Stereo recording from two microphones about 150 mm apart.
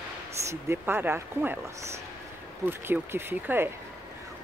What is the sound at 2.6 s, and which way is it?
A woman's voice, 15° right (ahead or behind).